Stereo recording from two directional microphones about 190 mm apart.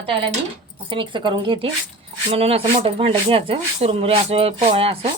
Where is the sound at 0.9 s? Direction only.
25° right (ahead or behind).